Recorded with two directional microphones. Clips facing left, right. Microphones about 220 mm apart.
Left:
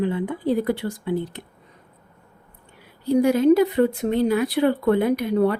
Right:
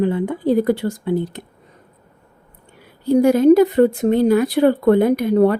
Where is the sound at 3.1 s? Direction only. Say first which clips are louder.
Right 5 dB; 45° right (ahead or behind).